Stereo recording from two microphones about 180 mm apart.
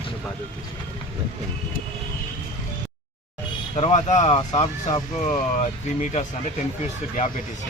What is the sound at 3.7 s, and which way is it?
Speech, 35° left (ahead or behind).